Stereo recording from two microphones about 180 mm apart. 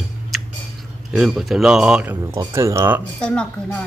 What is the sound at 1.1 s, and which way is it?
A woman's voice, 5° right (ahead or behind).